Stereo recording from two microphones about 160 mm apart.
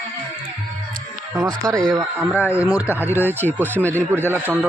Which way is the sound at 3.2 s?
15° left (ahead or behind).